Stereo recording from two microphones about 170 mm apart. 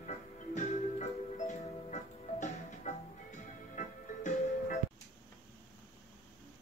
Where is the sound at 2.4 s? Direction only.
45° left (ahead or behind).